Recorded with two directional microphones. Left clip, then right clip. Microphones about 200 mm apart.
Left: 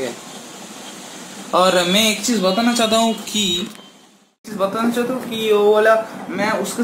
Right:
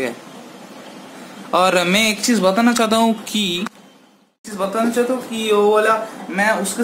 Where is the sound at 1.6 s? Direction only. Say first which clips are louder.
Even; 25° right (ahead or behind).